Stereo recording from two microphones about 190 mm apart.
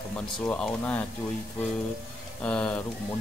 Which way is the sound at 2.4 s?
5° left (ahead or behind).